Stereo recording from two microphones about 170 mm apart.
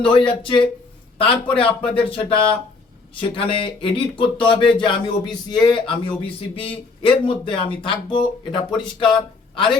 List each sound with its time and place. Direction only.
0.1 s speech: 30° left (ahead or behind)